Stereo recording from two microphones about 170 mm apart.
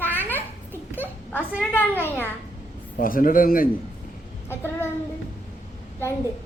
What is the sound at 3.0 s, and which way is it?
Speech, 55° left (ahead or behind).